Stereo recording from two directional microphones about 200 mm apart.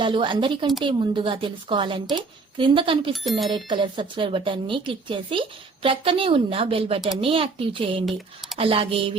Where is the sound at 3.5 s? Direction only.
25° right (ahead or behind).